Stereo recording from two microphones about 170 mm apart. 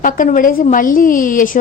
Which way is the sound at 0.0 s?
50° left (ahead or behind).